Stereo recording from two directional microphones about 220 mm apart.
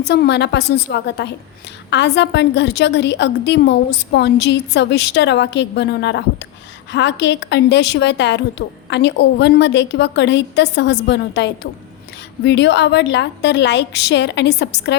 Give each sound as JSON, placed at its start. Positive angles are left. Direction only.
{"t": 0.0, "sound": "a woman's voice", "side_deg": 50}